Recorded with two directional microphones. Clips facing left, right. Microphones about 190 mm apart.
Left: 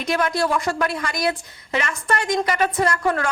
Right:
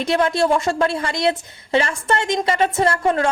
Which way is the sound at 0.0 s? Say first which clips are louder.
Right 4 dB; 25° right (ahead or behind).